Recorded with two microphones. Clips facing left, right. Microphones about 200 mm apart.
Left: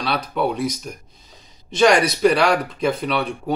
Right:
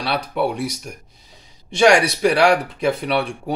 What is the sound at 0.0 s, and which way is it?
Speech, 10° right (ahead or behind).